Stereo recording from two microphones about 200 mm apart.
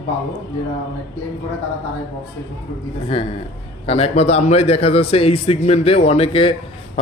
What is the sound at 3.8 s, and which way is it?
A man's voice, 30° left (ahead or behind).